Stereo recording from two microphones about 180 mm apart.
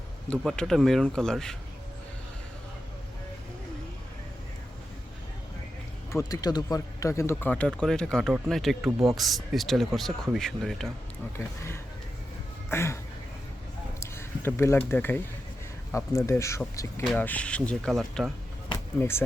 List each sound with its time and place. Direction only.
0.3 s speech: 5° left (ahead or behind)
6.1 s speech: 20° left (ahead or behind); by 10.9 s centre (ahead or behind)
11.3 s speech: 15° left (ahead or behind)
14.0 s speech: 15° left (ahead or behind)
18.9 s speech: 15° left (ahead or behind)